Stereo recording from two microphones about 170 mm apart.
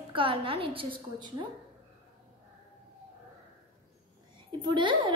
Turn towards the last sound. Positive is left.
turn(degrees=-30)  # may be behind; listen again after turning